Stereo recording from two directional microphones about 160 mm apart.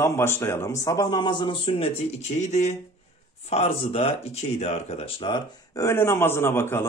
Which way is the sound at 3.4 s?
40° left (ahead or behind).